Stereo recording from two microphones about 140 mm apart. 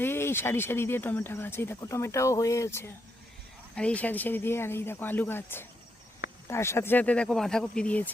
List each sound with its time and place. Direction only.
0.0 s speech: 15° left (ahead or behind)